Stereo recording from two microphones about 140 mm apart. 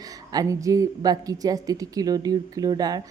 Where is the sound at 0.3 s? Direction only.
25° right (ahead or behind).